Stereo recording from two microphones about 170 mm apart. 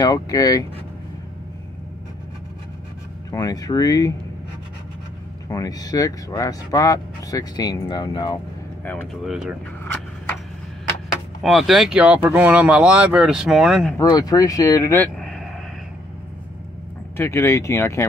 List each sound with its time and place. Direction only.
0.0 s speech: 20° left (ahead or behind)
3.3 s speech: 20° left (ahead or behind)
5.5 s speech: 20° left (ahead or behind)
8.8 s speech: 5° left (ahead or behind)
11.4 s speech: centre (ahead or behind)
13.9 s speech: 20° left (ahead or behind)
15.1 s vehicle: centre (ahead or behind)
17.2 s speech: 15° left (ahead or behind)